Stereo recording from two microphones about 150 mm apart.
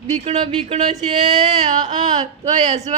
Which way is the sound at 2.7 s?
45° right (ahead or behind).